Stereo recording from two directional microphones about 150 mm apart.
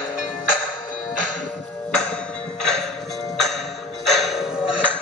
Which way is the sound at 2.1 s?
5° left (ahead or behind).